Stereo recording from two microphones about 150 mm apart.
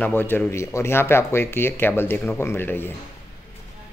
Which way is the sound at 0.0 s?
15° left (ahead or behind).